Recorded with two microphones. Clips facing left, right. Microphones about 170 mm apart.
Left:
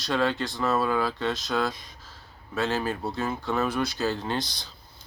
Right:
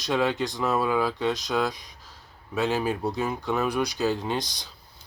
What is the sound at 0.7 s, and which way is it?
Speech, 15° right (ahead or behind).